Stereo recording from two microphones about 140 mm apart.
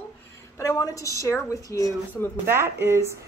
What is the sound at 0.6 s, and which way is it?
A woman's voice, 25° left (ahead or behind).